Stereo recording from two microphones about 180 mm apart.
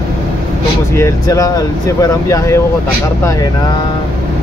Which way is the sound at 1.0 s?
20° left (ahead or behind).